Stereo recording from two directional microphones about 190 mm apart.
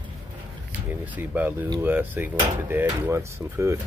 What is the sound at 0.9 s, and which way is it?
Speech, 10° right (ahead or behind).